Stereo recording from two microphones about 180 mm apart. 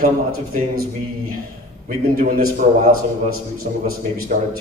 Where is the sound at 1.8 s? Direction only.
55° right (ahead or behind).